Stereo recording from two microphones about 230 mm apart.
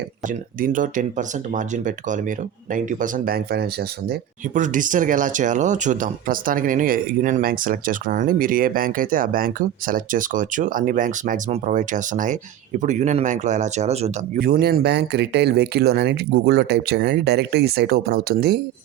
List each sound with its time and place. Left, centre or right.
0.6 s speech: right
14.4 s speech: right